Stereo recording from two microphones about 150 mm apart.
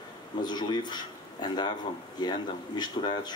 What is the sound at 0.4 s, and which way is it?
Speech, 30° left (ahead or behind).